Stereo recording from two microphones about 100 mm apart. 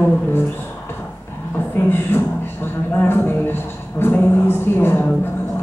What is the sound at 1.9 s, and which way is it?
Speech, 20° left (ahead or behind).